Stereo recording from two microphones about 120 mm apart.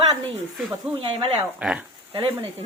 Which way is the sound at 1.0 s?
50° right (ahead or behind).